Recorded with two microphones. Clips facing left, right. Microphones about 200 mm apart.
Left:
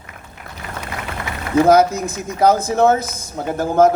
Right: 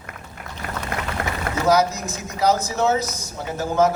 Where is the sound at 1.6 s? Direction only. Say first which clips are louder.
Left 5 dB; 55° left (ahead or behind).